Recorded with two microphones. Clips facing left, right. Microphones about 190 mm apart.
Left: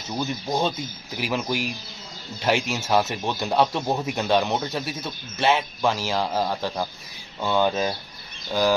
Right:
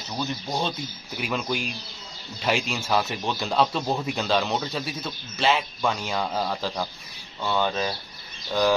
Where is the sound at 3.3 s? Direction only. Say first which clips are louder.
Right 1 dB; 20° left (ahead or behind).